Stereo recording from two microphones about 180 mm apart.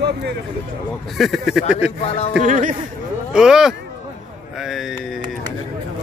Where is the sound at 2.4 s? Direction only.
45° right (ahead or behind).